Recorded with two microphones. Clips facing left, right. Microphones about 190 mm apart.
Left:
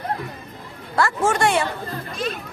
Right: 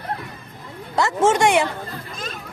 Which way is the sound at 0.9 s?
20° right (ahead or behind).